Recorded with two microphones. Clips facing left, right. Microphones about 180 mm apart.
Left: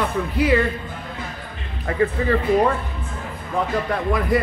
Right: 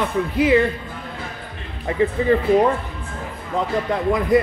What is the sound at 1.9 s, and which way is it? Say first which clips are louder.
Speech: right 1 dB; 20° right (ahead or behind).